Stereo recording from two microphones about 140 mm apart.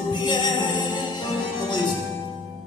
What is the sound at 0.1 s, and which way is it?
Music, 30° left (ahead or behind).